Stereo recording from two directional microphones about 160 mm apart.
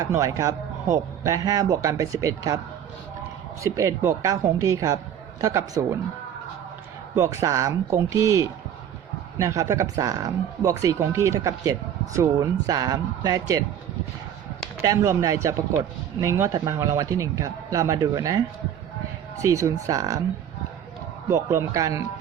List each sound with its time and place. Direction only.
0.0 s speech: 20° right (ahead or behind)
3.6 s speech: 20° right (ahead or behind)
7.2 s speech: 20° right (ahead or behind)
9.4 s speech: 20° right (ahead or behind)
14.8 s speech: 20° right (ahead or behind)
19.4 s speech: 20° right (ahead or behind)
21.2 s speech: 15° right (ahead or behind)